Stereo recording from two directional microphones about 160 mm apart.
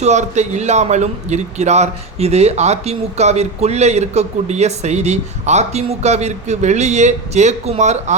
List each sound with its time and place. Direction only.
0.0 s a man's voice: 45° right (ahead or behind)